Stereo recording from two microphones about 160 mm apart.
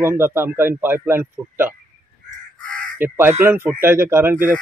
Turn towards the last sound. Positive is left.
turn(degrees=-10)  # may be behind; listen again after turning